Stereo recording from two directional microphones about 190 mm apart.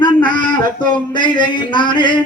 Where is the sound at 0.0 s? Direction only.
25° left (ahead or behind).